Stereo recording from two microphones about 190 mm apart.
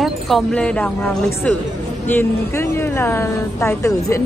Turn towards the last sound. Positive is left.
turn(degrees=15)  # may be behind; listen again after turning